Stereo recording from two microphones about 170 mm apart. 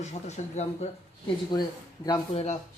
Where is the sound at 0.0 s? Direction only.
40° left (ahead or behind).